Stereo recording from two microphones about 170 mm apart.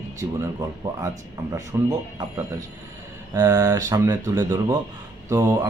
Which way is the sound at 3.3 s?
20° right (ahead or behind).